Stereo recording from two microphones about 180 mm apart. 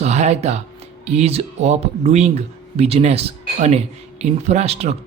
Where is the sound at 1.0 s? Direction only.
35° right (ahead or behind).